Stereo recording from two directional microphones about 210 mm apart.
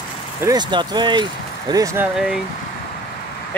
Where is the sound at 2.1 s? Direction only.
5° right (ahead or behind).